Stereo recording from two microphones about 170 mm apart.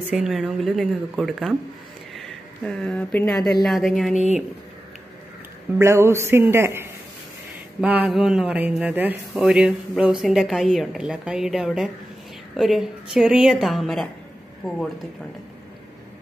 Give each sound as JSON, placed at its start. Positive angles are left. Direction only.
{"t": 0.1, "sound": "speech", "side_deg": 0}
{"t": 4.1, "sound": "speech", "side_deg": 40}
{"t": 5.8, "sound": "a sound", "side_deg": -15}
{"t": 9.3, "sound": "speech", "side_deg": -5}